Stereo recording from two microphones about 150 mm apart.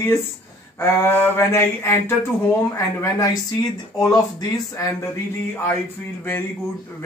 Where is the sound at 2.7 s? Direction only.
20° left (ahead or behind).